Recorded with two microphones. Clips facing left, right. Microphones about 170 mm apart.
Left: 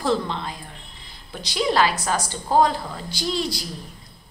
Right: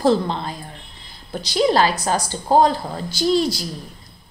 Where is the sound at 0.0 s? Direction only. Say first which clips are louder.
Right 5 dB; 35° right (ahead or behind).